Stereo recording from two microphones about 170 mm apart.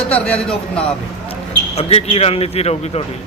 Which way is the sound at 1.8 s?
35° left (ahead or behind).